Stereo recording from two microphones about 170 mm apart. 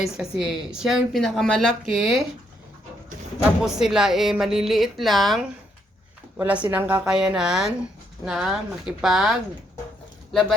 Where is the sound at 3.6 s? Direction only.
5° right (ahead or behind).